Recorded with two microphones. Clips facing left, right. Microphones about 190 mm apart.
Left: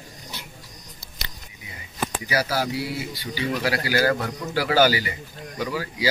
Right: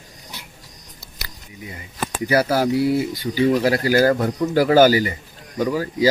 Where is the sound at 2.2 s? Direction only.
50° right (ahead or behind).